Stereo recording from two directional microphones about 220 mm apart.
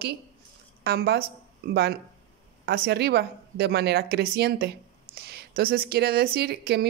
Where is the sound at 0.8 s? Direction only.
45° right (ahead or behind).